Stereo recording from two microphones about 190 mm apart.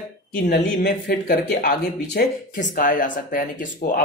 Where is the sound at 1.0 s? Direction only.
55° left (ahead or behind).